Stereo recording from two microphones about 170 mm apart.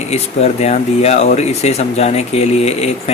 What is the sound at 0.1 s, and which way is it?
Speech, 40° left (ahead or behind).